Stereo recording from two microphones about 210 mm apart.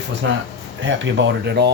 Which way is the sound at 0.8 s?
60° right (ahead or behind).